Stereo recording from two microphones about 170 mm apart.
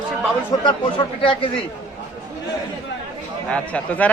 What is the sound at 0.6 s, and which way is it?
Speech, 25° left (ahead or behind).